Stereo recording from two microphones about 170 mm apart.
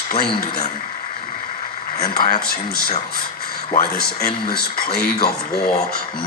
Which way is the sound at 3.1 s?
60° left (ahead or behind).